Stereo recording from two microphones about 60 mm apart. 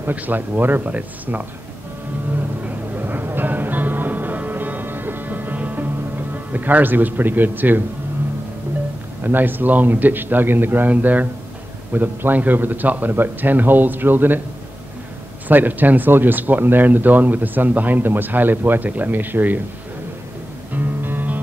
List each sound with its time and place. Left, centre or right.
0.0 s a man's voice: right
2.6 s music: right
6.3 s speech: right
9.2 s speech: right
15.4 s speech: right
20.7 s music: right